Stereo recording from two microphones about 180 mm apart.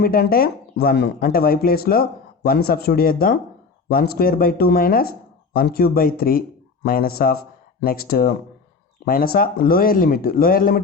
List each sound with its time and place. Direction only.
0.0 s speech: 55° left (ahead or behind)